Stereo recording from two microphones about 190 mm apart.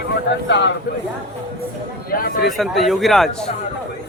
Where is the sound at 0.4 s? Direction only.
70° left (ahead or behind).